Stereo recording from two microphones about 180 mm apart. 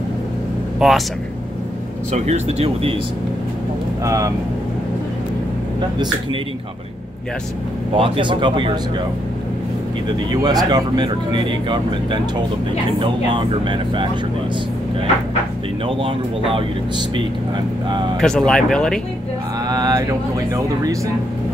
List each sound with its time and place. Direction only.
0.7 s speech: centre (ahead or behind)
2.1 s speech: 35° right (ahead or behind)
4.0 s speech: 20° right (ahead or behind)
8.0 s speech: 25° right (ahead or behind)
10.0 s speech: 20° right (ahead or behind)
16.0 s speech: 30° right (ahead or behind)
18.2 s speech: 5° left (ahead or behind)
19.7 s speech: 20° right (ahead or behind)